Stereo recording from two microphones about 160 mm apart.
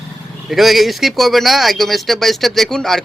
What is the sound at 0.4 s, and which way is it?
Speech, centre (ahead or behind).